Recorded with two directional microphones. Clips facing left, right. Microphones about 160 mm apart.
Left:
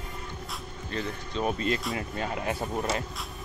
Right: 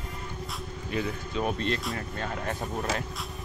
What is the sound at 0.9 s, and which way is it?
Speech, 5° right (ahead or behind).